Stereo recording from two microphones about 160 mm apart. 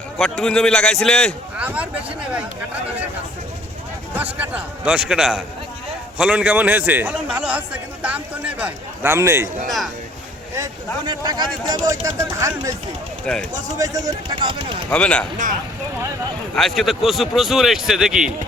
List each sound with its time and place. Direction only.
0.2 s a man's voice: 5° left (ahead or behind)
1.5 s speech: 10° right (ahead or behind)
4.1 s a man's voice: 10° right (ahead or behind)
9.6 s a man's voice: centre (ahead or behind)
11.0 s speech: 25° right (ahead or behind)
13.3 s a man's voice: 5° left (ahead or behind)
13.7 s speech: 20° right (ahead or behind)
14.8 s speech: 5° left (ahead or behind)
16.6 s a man's voice: centre (ahead or behind)